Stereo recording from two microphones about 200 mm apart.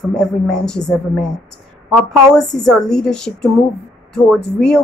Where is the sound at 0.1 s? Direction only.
5° left (ahead or behind).